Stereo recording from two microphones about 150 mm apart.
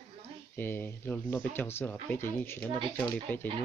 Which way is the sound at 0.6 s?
15° left (ahead or behind).